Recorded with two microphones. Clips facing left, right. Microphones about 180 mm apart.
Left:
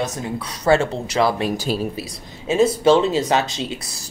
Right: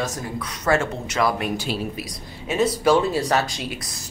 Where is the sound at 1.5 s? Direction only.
40° left (ahead or behind).